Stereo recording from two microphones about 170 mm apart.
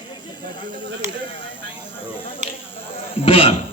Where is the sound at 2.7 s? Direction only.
35° left (ahead or behind).